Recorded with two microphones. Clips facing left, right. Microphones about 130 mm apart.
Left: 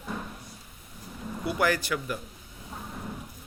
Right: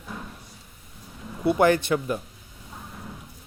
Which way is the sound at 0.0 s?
5° left (ahead or behind).